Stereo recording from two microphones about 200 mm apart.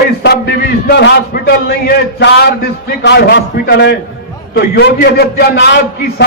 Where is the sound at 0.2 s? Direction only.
50° left (ahead or behind).